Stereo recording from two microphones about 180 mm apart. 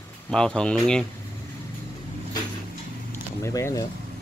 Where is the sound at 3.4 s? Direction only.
15° left (ahead or behind).